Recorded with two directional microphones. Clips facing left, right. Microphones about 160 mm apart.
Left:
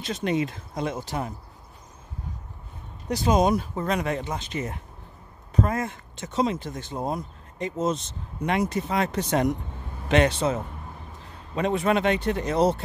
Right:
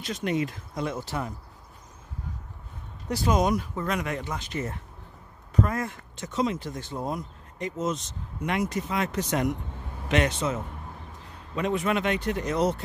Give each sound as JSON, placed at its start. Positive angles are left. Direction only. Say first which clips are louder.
{"t": 0.0, "sound": "speech", "louder": "left 2 dB", "side_deg": 25}
{"t": 3.1, "sound": "speech", "louder": "left 3 dB", "side_deg": 20}